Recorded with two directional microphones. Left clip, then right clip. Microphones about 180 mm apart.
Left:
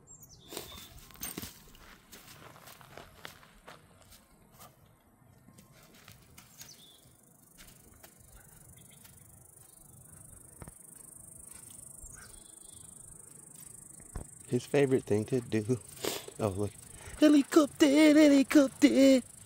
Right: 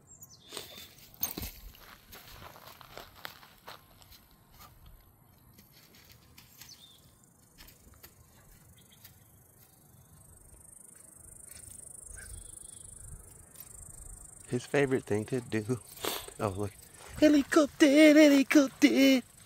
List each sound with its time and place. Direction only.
0.7 s a sound: 10° right (ahead or behind)
2.4 s walk: 65° right (ahead or behind)
14.4 s speech: 20° left (ahead or behind); by 19.2 s 5° left (ahead or behind)